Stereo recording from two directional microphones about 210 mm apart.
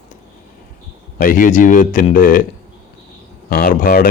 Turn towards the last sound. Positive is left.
turn(degrees=40)  # may be behind; listen again after turning